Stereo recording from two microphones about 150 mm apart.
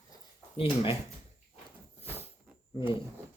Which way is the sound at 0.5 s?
35° left (ahead or behind).